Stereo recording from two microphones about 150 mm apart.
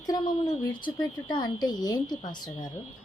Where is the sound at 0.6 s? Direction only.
30° left (ahead or behind).